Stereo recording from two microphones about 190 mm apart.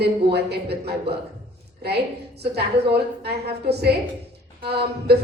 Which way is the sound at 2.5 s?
60° right (ahead or behind).